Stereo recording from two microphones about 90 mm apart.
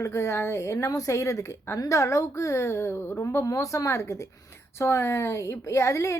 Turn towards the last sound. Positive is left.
turn(degrees=35)  # may be behind; listen again after turning